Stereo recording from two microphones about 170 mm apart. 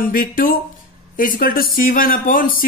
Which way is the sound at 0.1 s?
55° left (ahead or behind).